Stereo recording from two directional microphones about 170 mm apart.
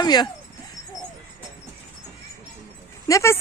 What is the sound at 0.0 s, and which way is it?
Speech, 25° left (ahead or behind).